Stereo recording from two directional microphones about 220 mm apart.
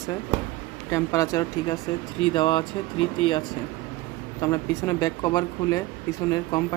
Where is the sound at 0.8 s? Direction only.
15° left (ahead or behind).